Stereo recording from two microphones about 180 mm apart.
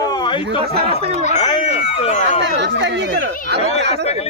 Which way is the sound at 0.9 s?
35° right (ahead or behind).